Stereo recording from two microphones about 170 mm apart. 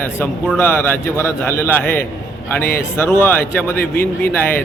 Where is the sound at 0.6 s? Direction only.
15° left (ahead or behind).